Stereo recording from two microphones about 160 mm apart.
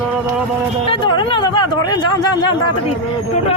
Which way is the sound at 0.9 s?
30° left (ahead or behind).